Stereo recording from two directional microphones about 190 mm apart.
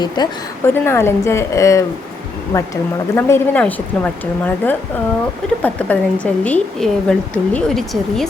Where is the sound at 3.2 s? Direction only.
10° left (ahead or behind).